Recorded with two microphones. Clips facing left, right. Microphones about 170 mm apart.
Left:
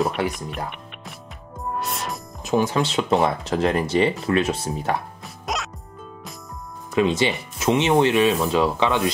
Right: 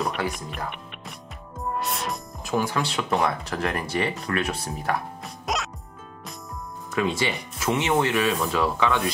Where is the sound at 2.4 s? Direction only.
20° left (ahead or behind).